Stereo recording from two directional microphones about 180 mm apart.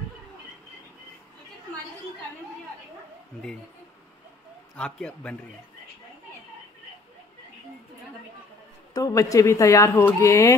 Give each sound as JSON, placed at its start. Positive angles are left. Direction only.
{"t": 4.7, "sound": "a man's voice", "side_deg": 5}
{"t": 8.9, "sound": "speech", "side_deg": 20}